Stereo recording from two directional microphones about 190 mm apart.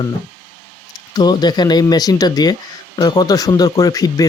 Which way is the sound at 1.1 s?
20° left (ahead or behind).